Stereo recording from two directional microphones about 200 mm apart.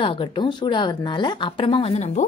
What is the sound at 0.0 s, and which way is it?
Speech, 25° left (ahead or behind).